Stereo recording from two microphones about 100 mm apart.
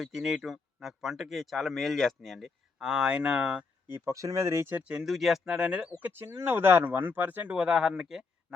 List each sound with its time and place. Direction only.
0.0 s speech: 5° right (ahead or behind)
3.8 s speech: 25° right (ahead or behind)
4.8 s speech: 10° right (ahead or behind)
6.0 s speech: 20° right (ahead or behind); by 8.5 s 5° right (ahead or behind)